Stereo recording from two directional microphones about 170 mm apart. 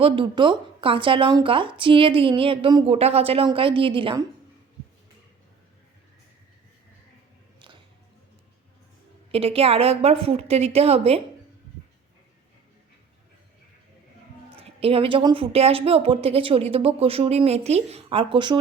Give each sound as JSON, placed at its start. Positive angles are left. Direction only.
{"t": 0.0, "sound": "a woman's voice", "side_deg": -30}
{"t": 9.3, "sound": "a woman's voice", "side_deg": -35}
{"t": 14.5, "sound": "a woman's voice", "side_deg": -35}